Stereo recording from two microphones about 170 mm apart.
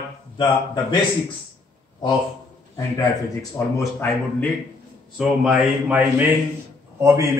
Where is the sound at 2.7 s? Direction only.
20° left (ahead or behind).